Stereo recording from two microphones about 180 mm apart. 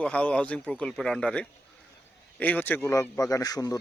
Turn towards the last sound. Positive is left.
turn(degrees=20)  # may be behind; listen again after turning